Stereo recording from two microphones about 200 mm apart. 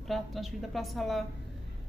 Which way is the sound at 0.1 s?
Centre (ahead or behind).